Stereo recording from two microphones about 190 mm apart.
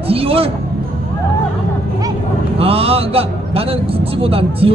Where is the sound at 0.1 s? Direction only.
30° right (ahead or behind).